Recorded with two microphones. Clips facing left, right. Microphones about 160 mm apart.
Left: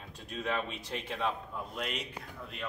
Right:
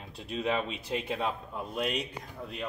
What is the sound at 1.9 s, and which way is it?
Speech, 35° right (ahead or behind).